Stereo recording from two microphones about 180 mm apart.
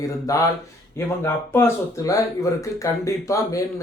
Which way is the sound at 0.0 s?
20° left (ahead or behind).